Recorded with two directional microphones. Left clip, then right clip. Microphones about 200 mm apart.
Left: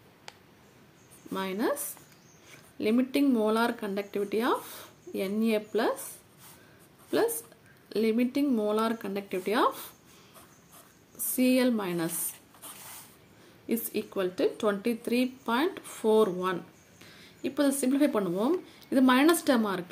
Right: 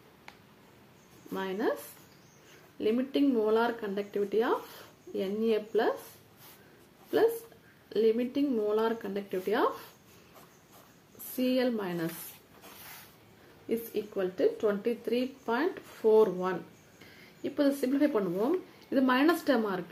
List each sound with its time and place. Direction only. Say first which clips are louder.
1.3 s speech: left 1 dB; 40° left (ahead or behind)
2.8 s speech: left 2 dB; 40° left (ahead or behind)
7.9 s speech: right 1 dB; 40° left (ahead or behind)
11.3 s speech: left 3 dB; 40° left (ahead or behind)
13.7 s speech: even; 45° left (ahead or behind)